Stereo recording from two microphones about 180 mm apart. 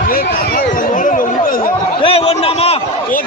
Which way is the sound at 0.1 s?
50° left (ahead or behind).